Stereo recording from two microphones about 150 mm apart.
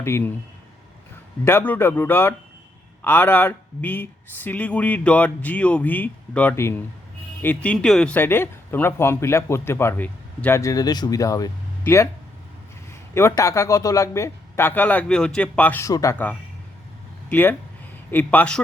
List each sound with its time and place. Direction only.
0.0 s speech: 15° left (ahead or behind)
1.5 s speech: 15° left (ahead or behind)
13.1 s speech: 20° left (ahead or behind)